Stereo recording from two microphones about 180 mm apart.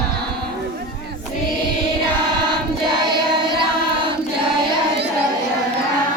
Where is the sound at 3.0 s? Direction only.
25° right (ahead or behind).